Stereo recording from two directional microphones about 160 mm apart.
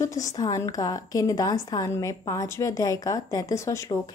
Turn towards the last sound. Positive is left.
turn(degrees=20)  # may be behind; listen again after turning